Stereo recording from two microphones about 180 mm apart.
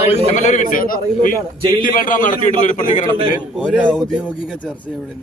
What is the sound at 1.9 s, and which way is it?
A man's voice, 50° left (ahead or behind).